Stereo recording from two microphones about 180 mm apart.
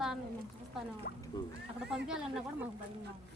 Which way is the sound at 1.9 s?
5° right (ahead or behind).